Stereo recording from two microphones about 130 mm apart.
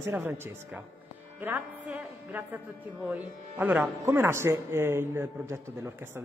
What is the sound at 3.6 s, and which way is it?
A man's voice, 15° right (ahead or behind).